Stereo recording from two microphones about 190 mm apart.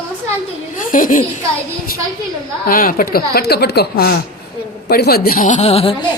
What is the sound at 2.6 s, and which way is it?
Speech, 50° left (ahead or behind).